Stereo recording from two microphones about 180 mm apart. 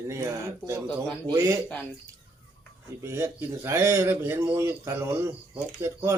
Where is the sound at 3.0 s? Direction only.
15° right (ahead or behind).